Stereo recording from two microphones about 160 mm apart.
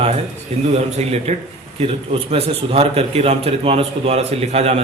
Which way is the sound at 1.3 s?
45° right (ahead or behind).